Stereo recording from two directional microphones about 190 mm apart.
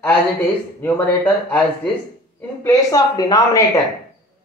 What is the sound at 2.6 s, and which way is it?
Speech, 20° left (ahead or behind).